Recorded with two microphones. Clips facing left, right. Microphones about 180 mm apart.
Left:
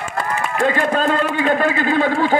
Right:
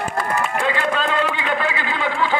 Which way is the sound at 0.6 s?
45° left (ahead or behind).